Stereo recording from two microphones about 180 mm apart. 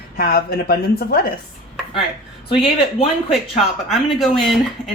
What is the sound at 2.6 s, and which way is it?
Speech, 35° left (ahead or behind).